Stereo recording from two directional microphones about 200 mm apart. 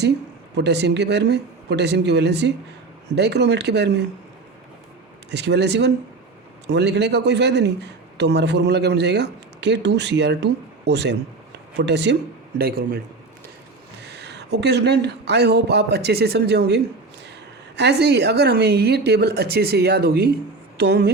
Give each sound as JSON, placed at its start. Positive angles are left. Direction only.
{"t": 0.5, "sound": "a man's voice", "side_deg": -60}
{"t": 5.3, "sound": "a man's voice", "side_deg": -60}
{"t": 14.0, "sound": "a man's voice", "side_deg": -55}